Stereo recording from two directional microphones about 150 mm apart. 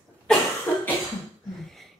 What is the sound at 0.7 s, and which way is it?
Cough, 10° left (ahead or behind).